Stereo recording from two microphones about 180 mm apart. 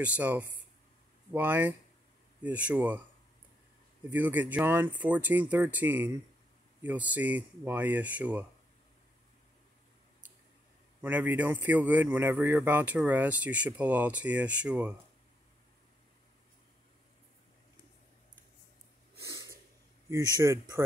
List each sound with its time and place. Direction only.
0.0 s speech: 10° right (ahead or behind)
4.1 s speech: 10° right (ahead or behind)
11.0 s speech: 10° right (ahead or behind)
19.1 s snort: 15° right (ahead or behind)
20.3 s speech: 20° right (ahead or behind)